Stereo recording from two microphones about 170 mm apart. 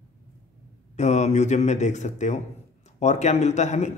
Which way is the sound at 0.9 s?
40° left (ahead or behind).